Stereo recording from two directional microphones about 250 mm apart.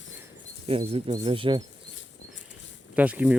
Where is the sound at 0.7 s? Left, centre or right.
Right.